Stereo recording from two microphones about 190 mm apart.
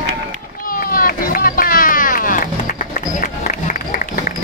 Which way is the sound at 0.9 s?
50° left (ahead or behind).